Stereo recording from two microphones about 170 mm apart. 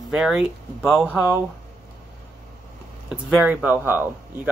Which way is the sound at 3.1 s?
5° right (ahead or behind).